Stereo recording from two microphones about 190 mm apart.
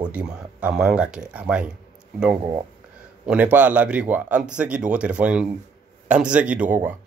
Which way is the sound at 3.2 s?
5° right (ahead or behind).